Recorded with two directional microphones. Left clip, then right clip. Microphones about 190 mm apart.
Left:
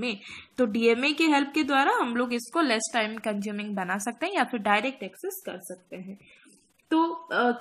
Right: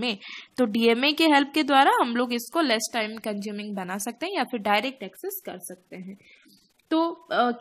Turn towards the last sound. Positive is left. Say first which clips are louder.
# right 1 dB
turn(degrees=-60)  # may be behind; listen again after turning